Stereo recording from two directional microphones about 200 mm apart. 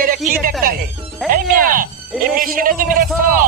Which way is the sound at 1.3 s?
45° right (ahead or behind).